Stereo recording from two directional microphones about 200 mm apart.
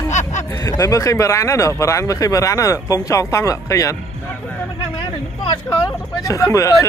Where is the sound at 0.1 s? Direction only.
35° left (ahead or behind).